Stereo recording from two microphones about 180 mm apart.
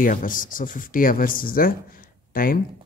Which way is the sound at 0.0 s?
50° left (ahead or behind).